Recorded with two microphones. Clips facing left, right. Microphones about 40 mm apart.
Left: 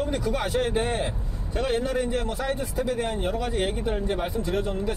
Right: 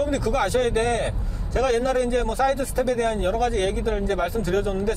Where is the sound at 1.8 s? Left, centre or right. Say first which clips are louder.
Right 4 dB; right.